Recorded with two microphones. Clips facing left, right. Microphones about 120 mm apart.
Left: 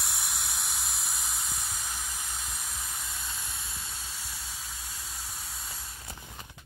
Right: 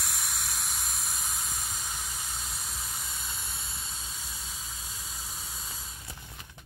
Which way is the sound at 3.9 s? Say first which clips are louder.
Even; 20° right (ahead or behind).